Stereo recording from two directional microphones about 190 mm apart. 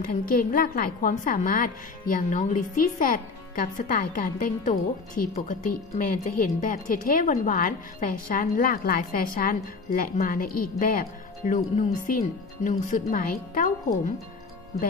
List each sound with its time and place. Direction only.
0.0 s a woman's voice: 45° left (ahead or behind)